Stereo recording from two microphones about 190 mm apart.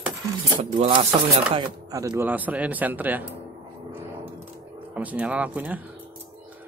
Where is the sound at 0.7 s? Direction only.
30° right (ahead or behind).